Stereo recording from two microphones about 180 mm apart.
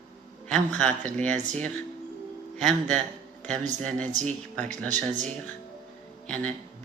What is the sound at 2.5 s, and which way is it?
Speech, centre (ahead or behind).